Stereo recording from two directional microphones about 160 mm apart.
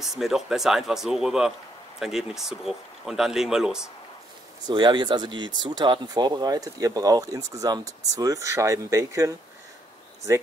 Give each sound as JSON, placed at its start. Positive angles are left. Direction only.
{"t": 0.0, "sound": "speech", "side_deg": 0}
{"t": 4.6, "sound": "speech", "side_deg": -25}